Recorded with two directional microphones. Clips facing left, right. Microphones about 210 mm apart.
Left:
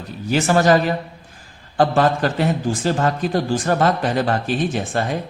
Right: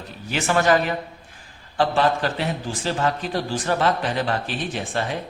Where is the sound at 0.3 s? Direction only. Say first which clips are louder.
Left 4 dB; 40° left (ahead or behind).